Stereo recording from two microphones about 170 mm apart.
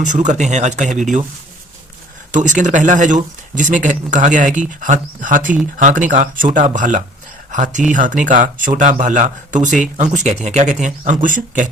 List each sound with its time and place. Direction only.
0.0 s speech: 45° right (ahead or behind)
2.3 s speech: 45° right (ahead or behind)